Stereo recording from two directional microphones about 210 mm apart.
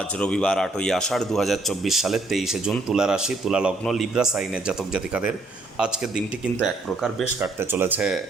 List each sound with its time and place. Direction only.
0.2 s speech: 5° left (ahead or behind)
7.3 s speech: 10° right (ahead or behind)